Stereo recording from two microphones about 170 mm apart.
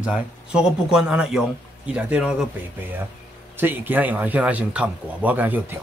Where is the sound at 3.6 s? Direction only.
10° right (ahead or behind).